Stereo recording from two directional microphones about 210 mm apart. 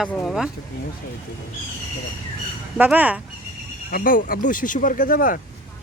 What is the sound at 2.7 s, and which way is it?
Speech, 10° right (ahead or behind).